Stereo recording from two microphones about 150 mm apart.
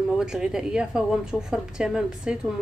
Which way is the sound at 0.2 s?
5° right (ahead or behind).